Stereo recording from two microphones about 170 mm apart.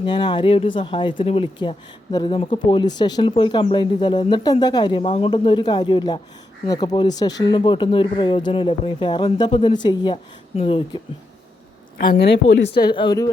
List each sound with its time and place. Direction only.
0.0 s speech: 25° left (ahead or behind)
12.5 s speech: 90° left
12.9 s speech: 25° left (ahead or behind)